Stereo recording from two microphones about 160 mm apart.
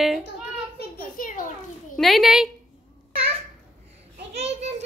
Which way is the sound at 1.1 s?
55° left (ahead or behind).